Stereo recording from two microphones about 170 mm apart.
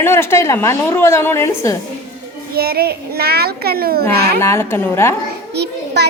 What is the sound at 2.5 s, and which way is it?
A child's voice, 65° right (ahead or behind).